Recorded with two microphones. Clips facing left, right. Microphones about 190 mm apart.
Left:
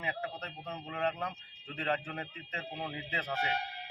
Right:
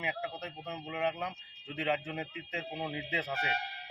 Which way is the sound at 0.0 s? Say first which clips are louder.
Right 1 dB; 5° right (ahead or behind).